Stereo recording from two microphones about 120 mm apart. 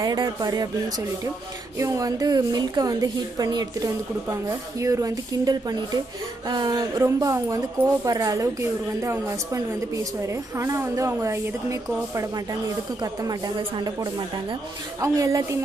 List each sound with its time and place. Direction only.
0.0 s a woman's voice: 35° right (ahead or behind)
13.6 s a woman's voice: 40° right (ahead or behind)
15.0 s a woman's voice: 30° right (ahead or behind)